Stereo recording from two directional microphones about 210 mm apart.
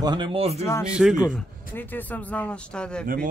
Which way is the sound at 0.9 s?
5° right (ahead or behind).